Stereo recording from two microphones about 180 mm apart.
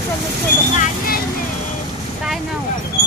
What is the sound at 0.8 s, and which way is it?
Vehicle, 55° left (ahead or behind).